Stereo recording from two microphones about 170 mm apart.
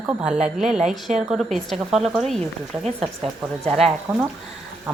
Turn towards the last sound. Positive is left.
turn(degrees=0)  # may be behind; listen again after turning